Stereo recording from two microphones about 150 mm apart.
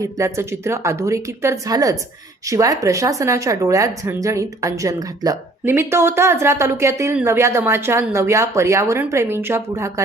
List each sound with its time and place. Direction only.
0.0 s a woman's voice: 20° right (ahead or behind)